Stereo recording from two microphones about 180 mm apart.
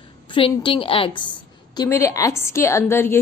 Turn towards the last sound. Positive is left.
turn(degrees=15)  # may be behind; listen again after turning